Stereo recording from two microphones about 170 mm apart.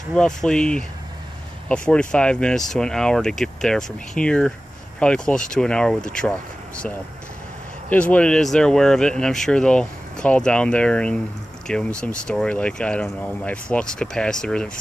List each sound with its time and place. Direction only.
0.1 s speech: 5° left (ahead or behind)
7.9 s speech: 10° left (ahead or behind)